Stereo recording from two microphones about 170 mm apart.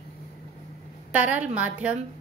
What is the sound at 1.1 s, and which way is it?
Speech, 10° right (ahead or behind).